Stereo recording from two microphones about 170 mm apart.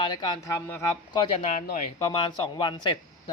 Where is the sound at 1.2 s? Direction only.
35° left (ahead or behind).